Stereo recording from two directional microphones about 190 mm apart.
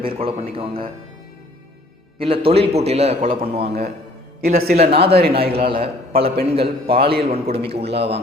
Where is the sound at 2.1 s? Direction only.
30° right (ahead or behind).